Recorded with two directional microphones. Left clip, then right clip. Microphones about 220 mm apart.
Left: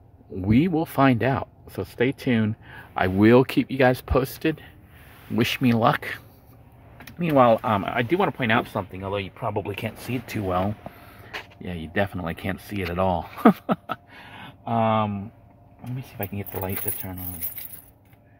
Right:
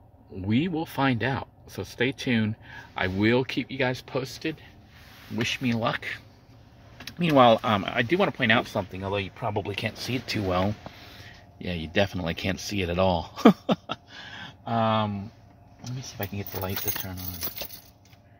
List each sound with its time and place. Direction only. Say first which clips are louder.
0.4 s speech: left 5 dB; 15° left (ahead or behind)
7.1 s speech: left 1 dB; 10° right (ahead or behind)